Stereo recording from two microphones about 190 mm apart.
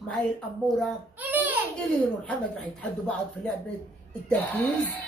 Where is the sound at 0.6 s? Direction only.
5° right (ahead or behind).